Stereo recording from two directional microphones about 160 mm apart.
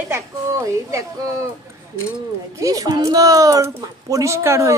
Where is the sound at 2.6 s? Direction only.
20° right (ahead or behind).